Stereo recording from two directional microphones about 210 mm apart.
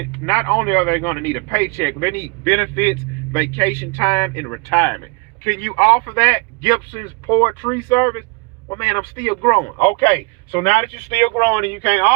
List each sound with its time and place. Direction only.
0.3 s a man's voice: 10° left (ahead or behind)